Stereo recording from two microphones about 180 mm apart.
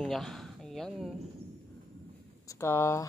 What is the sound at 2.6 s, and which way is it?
Speech, 15° left (ahead or behind).